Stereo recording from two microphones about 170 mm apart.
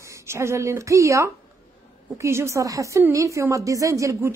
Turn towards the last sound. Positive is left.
turn(degrees=-20)  # may be behind; listen again after turning